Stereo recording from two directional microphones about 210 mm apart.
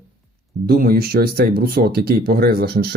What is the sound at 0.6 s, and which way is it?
Speech, 45° right (ahead or behind).